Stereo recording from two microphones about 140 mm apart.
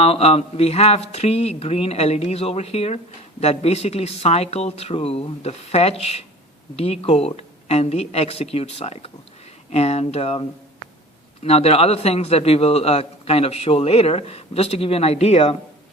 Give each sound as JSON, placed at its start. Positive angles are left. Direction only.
{"t": 0.0, "sound": "a man's voice", "side_deg": 45}
{"t": 11.4, "sound": "a man's voice", "side_deg": 45}